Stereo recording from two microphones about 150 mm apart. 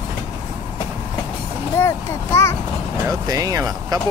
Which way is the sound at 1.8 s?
15° left (ahead or behind).